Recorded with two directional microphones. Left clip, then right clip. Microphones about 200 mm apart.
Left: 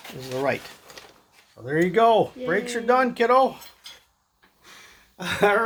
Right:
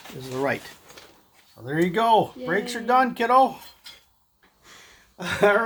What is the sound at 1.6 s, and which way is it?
Speech, 20° left (ahead or behind).